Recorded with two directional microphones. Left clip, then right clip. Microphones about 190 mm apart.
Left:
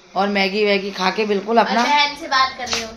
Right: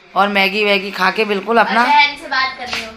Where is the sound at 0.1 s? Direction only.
10° right (ahead or behind).